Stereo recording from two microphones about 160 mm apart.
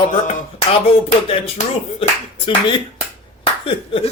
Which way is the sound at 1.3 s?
35° left (ahead or behind).